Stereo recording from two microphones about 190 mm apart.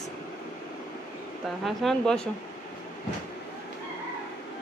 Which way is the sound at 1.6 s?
Centre (ahead or behind).